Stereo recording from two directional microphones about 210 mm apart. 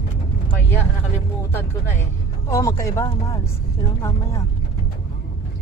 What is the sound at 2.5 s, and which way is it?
Speech, 15° left (ahead or behind).